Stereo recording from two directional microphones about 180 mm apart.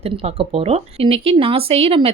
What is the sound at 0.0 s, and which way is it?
Speech, 35° right (ahead or behind).